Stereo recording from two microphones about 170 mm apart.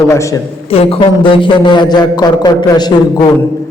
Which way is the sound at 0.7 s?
35° left (ahead or behind).